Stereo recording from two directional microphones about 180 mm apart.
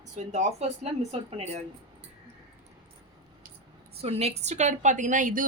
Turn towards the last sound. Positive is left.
turn(degrees=-45)  # may be behind; listen again after turning